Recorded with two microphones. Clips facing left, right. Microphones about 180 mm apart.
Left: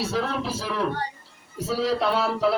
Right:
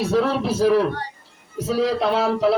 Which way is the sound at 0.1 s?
60° right (ahead or behind).